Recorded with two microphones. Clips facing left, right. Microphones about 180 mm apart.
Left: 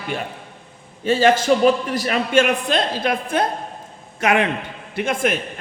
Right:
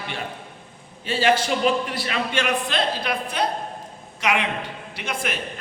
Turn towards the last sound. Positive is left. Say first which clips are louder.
# left 8 dB
turn(degrees=50)  # may be behind; listen again after turning